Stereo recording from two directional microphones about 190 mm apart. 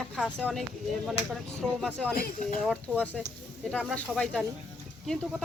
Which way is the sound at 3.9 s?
5° left (ahead or behind).